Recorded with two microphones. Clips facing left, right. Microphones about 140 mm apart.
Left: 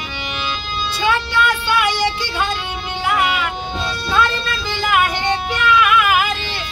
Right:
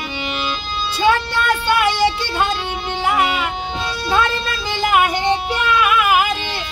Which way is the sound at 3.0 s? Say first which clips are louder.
Even; 25° right (ahead or behind).